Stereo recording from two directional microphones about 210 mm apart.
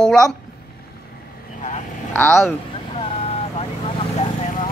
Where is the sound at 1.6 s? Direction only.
35° left (ahead or behind).